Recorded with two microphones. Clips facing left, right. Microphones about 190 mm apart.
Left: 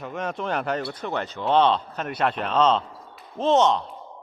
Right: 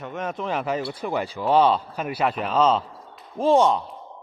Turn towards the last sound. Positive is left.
turn(degrees=-10)  # may be behind; listen again after turning